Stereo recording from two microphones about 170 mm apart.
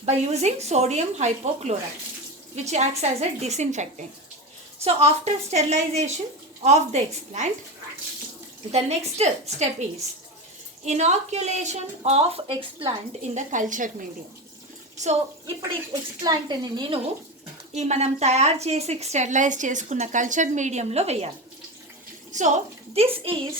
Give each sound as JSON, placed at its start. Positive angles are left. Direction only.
{"t": 0.0, "sound": "a woman's voice", "side_deg": -40}
{"t": 8.7, "sound": "a woman's voice", "side_deg": -40}
{"t": 10.8, "sound": "a woman's voice", "side_deg": -40}
{"t": 13.3, "sound": "a woman's voice", "side_deg": -50}
{"t": 15.4, "sound": "speech", "side_deg": -25}
{"t": 17.7, "sound": "a woman's voice", "side_deg": -40}
{"t": 22.3, "sound": "speech", "side_deg": -45}
{"t": 23.0, "sound": "a woman's voice", "side_deg": -30}